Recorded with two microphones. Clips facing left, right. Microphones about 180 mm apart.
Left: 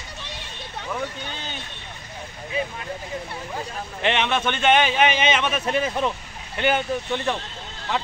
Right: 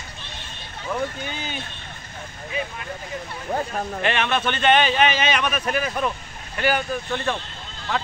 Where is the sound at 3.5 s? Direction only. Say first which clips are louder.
Right 8 dB; 45° right (ahead or behind).